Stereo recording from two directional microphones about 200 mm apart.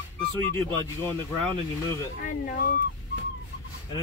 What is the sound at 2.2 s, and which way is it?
Speech, 45° left (ahead or behind).